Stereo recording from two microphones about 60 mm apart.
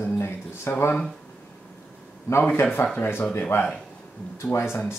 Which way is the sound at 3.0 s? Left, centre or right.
Left.